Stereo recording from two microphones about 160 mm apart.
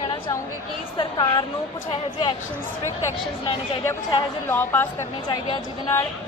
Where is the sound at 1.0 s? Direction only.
30° left (ahead or behind).